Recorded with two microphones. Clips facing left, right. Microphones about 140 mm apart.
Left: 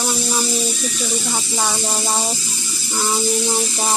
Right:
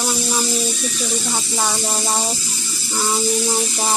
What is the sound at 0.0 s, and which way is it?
Snake, centre (ahead or behind).